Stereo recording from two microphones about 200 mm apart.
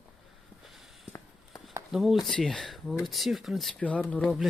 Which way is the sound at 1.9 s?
Centre (ahead or behind).